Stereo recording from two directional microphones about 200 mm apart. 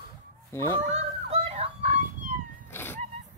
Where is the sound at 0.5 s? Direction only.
15° left (ahead or behind).